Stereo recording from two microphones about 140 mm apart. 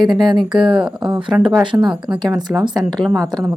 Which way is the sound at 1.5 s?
30° right (ahead or behind).